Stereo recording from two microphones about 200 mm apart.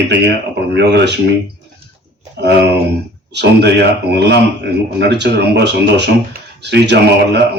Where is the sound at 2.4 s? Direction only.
55° right (ahead or behind).